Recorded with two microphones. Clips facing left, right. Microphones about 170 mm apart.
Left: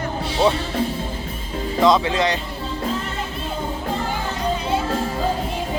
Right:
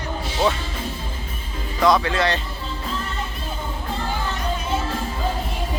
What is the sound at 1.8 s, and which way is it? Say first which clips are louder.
Speech: left 1 dB; 20° left (ahead or behind).